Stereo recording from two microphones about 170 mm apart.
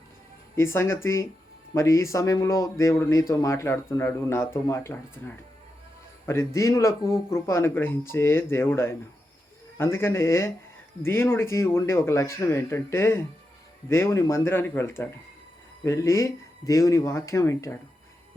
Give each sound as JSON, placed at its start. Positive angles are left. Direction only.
{"t": 0.5, "sound": "speech", "side_deg": 15}
{"t": 6.2, "sound": "speech", "side_deg": 15}